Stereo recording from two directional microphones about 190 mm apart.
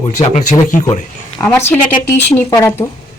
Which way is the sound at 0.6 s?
40° left (ahead or behind).